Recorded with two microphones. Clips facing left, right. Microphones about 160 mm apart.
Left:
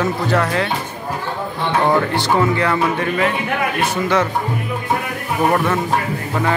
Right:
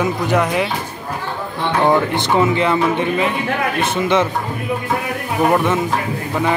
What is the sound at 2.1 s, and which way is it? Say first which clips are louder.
Speech: right 1 dB; 20° right (ahead or behind).